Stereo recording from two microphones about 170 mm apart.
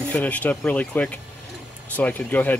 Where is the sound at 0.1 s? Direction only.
10° left (ahead or behind).